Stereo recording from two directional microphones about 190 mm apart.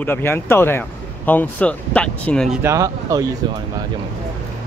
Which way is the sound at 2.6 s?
15° right (ahead or behind).